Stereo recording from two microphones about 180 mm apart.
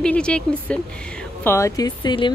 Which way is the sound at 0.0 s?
5° left (ahead or behind).